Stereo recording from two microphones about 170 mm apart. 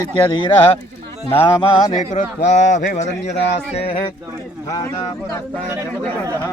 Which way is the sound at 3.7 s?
35° left (ahead or behind).